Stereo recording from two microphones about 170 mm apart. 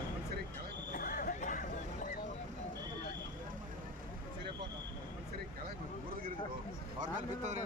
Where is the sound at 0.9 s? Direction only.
55° left (ahead or behind).